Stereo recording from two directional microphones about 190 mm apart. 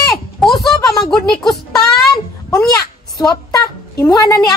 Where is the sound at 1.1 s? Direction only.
Centre (ahead or behind).